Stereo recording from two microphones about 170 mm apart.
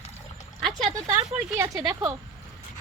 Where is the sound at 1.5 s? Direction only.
20° right (ahead or behind).